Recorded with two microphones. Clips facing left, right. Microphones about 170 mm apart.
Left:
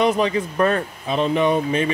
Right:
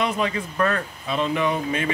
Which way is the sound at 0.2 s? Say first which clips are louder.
Left 4 dB; 25° left (ahead or behind).